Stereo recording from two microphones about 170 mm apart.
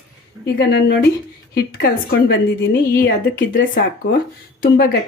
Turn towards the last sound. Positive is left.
turn(degrees=70)  # may be behind; listen again after turning